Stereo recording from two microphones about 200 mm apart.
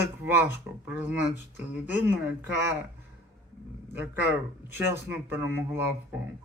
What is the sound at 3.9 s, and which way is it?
Speech, 10° right (ahead or behind).